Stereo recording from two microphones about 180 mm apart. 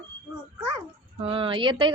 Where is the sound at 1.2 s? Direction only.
30° right (ahead or behind).